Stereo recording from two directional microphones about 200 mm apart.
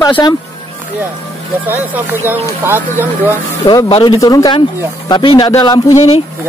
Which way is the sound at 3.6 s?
25° left (ahead or behind).